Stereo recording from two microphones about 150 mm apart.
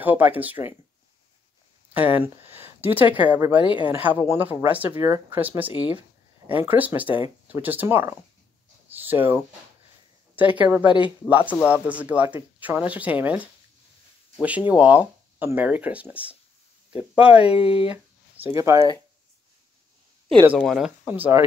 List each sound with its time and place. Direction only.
0.0 s speech: 10° right (ahead or behind)
2.0 s speech: 10° right (ahead or behind)
8.8 s a sound: 10° right (ahead or behind)
10.6 s speech: 10° right (ahead or behind)
17.5 s speech: 35° left (ahead or behind)
18.3 s speech: 15° right (ahead or behind)
20.4 s speech: 5° right (ahead or behind)